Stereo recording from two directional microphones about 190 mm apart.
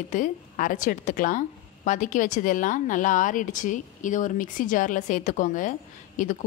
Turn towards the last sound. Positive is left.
turn(degrees=45)  # may be behind; listen again after turning